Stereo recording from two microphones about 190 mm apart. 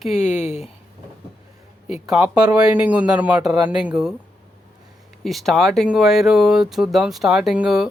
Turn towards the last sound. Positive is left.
turn(degrees=0)  # may be behind; listen again after turning